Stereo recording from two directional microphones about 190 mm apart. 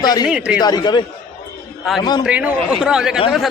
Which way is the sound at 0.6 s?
20° left (ahead or behind).